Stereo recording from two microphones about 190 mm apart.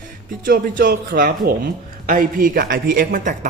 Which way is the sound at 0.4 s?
45° right (ahead or behind).